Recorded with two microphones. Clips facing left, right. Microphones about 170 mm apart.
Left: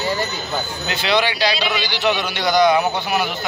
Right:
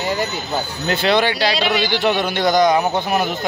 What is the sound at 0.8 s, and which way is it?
A man's voice, 50° right (ahead or behind).